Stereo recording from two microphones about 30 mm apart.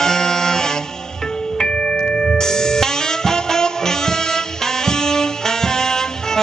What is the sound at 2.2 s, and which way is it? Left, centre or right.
Music, centre.